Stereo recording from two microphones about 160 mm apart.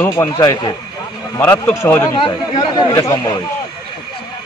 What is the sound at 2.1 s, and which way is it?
Speech, 25° left (ahead or behind).